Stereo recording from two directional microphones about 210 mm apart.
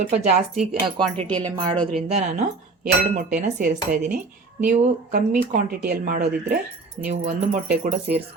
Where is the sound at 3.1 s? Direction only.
40° right (ahead or behind).